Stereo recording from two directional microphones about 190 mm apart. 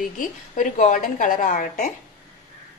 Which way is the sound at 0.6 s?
40° left (ahead or behind).